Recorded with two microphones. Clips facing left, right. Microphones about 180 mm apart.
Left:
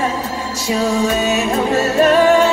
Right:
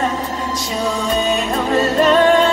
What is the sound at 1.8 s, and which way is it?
Music, 10° left (ahead or behind).